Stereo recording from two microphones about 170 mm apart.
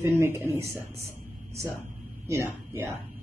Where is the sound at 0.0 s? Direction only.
15° right (ahead or behind).